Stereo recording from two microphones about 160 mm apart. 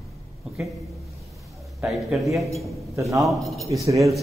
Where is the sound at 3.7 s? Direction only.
20° right (ahead or behind).